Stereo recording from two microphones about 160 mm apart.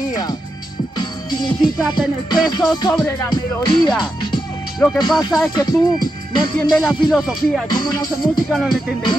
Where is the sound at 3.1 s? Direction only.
20° left (ahead or behind).